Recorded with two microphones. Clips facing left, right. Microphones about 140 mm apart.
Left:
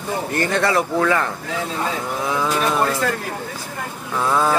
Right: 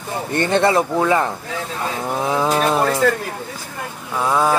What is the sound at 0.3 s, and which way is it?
Speech, 25° right (ahead or behind).